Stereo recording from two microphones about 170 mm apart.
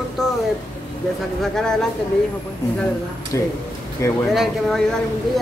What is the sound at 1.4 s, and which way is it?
Speech, 5° left (ahead or behind).